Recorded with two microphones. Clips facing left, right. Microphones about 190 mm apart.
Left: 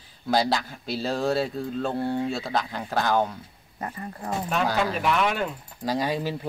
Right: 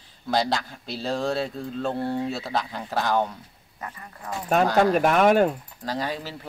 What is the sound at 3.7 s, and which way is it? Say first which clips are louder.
Speech: left 5 dB; 35° left (ahead or behind).